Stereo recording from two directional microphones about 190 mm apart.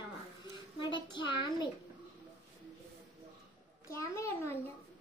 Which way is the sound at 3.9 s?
15° left (ahead or behind).